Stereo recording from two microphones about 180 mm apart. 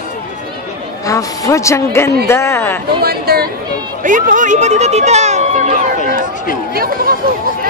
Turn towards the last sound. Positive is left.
turn(degrees=-55)  # may be behind; listen again after turning